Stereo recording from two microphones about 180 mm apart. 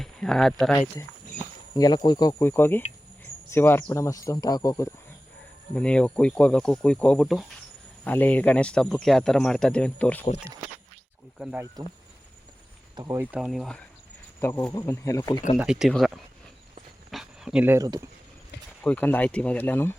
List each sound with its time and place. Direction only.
0.0 s speech: 5° left (ahead or behind)
1.7 s speech: 20° left (ahead or behind)
5.7 s speech: 5° left (ahead or behind)
11.8 s speech: 20° right (ahead or behind)
13.0 s speech: 15° right (ahead or behind)
13.4 s speech: centre (ahead or behind)
14.4 s speech: 10° left (ahead or behind)
15.5 s speech: 5° right (ahead or behind)
17.1 s a sound: centre (ahead or behind); by 18.0 s 20° right (ahead or behind)
18.8 s speech: 10° left (ahead or behind)